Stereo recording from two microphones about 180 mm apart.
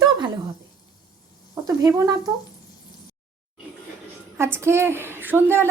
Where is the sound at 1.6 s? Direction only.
20° right (ahead or behind).